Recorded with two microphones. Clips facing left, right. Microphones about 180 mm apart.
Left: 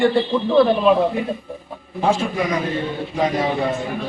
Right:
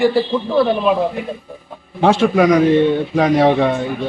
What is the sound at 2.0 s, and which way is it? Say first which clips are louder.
Speech: right 7 dB; 80° right.